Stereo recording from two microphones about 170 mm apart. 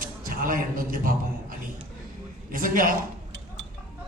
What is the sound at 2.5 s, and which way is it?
Speech, 55° right (ahead or behind).